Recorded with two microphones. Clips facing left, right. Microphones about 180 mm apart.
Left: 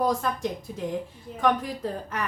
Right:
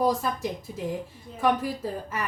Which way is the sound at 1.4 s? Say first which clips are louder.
Even; 5° right (ahead or behind).